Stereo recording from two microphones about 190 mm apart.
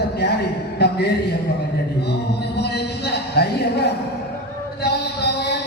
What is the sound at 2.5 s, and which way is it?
Music, 60° left (ahead or behind).